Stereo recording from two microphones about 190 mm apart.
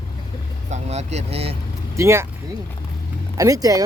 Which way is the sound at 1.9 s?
15° right (ahead or behind).